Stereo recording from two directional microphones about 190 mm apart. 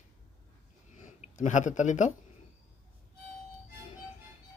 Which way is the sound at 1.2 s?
40° left (ahead or behind).